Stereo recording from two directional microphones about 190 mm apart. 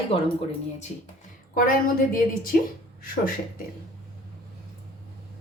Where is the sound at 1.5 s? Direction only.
45° left (ahead or behind).